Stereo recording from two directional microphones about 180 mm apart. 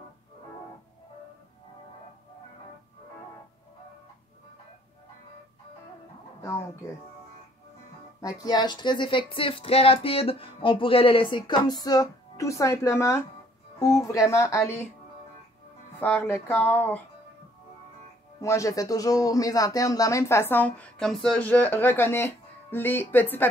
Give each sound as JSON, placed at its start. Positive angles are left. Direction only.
{"t": 6.4, "sound": "music", "side_deg": 15}
{"t": 8.4, "sound": "a sound", "side_deg": 20}
{"t": 13.7, "sound": "speech", "side_deg": 20}
{"t": 16.0, "sound": "speech", "side_deg": 10}
{"t": 18.4, "sound": "speech", "side_deg": 15}